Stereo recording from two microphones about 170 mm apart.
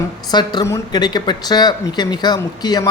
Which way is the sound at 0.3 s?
25° left (ahead or behind).